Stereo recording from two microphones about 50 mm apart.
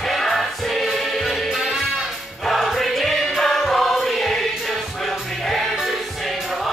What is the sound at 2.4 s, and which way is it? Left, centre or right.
Choir, centre.